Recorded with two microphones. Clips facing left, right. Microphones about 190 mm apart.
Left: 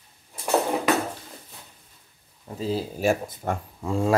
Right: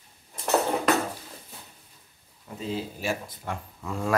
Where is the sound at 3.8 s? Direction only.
25° left (ahead or behind).